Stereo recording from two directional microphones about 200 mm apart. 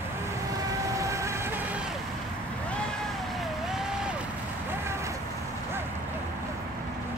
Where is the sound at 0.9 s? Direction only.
15° right (ahead or behind).